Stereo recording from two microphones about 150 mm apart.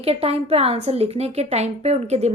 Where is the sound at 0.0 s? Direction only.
40° right (ahead or behind).